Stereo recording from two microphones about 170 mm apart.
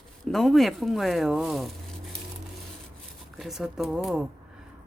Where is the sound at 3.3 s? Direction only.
Centre (ahead or behind).